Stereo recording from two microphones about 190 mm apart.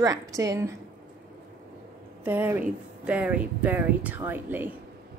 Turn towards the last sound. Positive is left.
turn(degrees=-10)  # may be behind; listen again after turning